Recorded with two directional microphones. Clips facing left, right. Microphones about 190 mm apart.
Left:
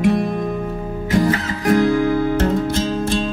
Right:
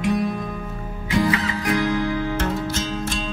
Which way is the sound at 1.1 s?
40° left (ahead or behind).